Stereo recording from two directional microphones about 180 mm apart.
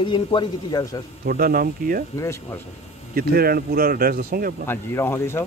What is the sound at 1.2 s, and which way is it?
Speech, 55° right (ahead or behind).